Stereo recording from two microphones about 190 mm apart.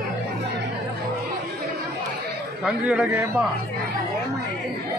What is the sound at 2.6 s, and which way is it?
Speech, 5° right (ahead or behind).